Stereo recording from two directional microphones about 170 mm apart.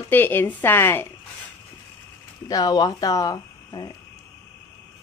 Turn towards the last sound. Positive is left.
turn(degrees=25)  # may be behind; listen again after turning